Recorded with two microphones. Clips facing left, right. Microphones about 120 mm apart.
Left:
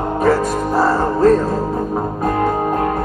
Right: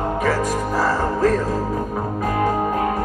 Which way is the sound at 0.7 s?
30° left (ahead or behind).